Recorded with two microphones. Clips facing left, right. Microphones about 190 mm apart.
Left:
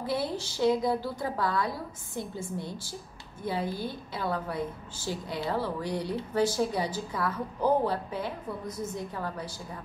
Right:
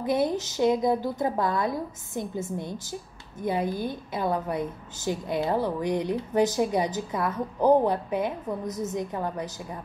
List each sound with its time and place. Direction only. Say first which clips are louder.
0.0 s a woman's voice: right 6 dB; 20° right (ahead or behind)
8.5 s a woman's voice: right 5 dB; 40° right (ahead or behind)
8.8 s a woman's voice: right 4 dB; 20° right (ahead or behind)